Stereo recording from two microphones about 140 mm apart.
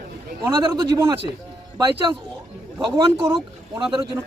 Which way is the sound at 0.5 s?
30° right (ahead or behind).